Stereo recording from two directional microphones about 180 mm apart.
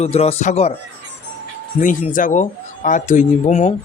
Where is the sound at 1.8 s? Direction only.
45° left (ahead or behind).